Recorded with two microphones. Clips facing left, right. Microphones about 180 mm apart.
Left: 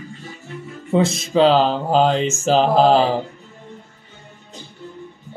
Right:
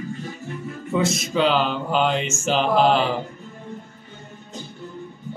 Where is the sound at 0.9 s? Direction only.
30° left (ahead or behind).